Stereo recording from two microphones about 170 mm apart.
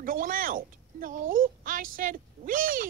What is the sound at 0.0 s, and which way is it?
A woman's voice, 55° right (ahead or behind).